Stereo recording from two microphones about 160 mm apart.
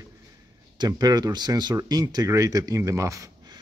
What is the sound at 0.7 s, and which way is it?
Speech, 25° right (ahead or behind).